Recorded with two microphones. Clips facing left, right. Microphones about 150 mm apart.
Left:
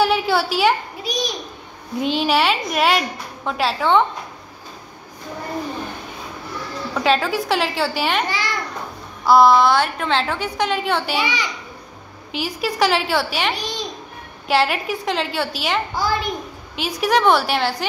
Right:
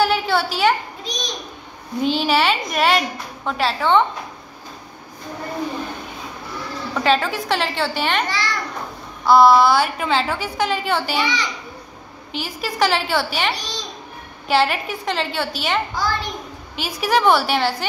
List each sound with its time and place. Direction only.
0.0 s a sound: centre (ahead or behind)
2.0 s a woman's voice: centre (ahead or behind)
6.9 s a woman's voice: centre (ahead or behind)
11.1 s a child's voice: 10° left (ahead or behind)
12.3 s a woman's voice: centre (ahead or behind)
14.5 s a woman's voice: centre (ahead or behind)
15.9 s a child's voice: 15° left (ahead or behind)
16.7 s a woman's voice: centre (ahead or behind)